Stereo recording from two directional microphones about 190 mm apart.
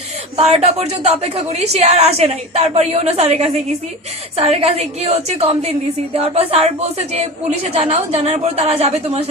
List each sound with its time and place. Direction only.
0.3 s a woman's voice: 35° right (ahead or behind)